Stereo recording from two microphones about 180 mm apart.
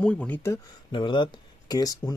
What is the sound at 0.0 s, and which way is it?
Speech, 5° left (ahead or behind).